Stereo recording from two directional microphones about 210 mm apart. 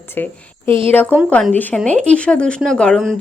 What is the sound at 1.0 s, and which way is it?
Speech, 10° right (ahead or behind).